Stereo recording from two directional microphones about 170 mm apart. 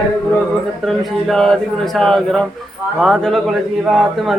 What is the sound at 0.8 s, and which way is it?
Speech, centre (ahead or behind).